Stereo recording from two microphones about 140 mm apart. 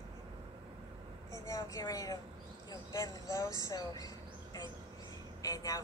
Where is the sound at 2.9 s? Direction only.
25° left (ahead or behind).